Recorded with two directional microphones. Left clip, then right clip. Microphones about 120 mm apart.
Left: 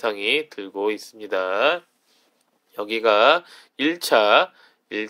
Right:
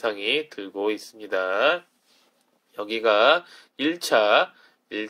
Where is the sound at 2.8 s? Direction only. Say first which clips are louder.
Left 2 dB; 30° left (ahead or behind).